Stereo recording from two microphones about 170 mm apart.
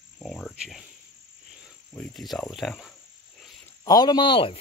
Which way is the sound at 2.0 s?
Centre (ahead or behind).